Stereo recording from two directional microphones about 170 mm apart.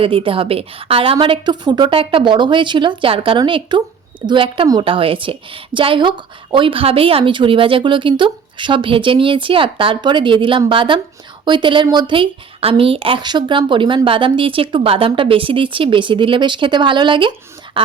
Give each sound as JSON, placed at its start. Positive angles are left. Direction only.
{"t": 0.0, "sound": "a woman's voice", "side_deg": -30}
{"t": 17.7, "sound": "dog", "side_deg": -30}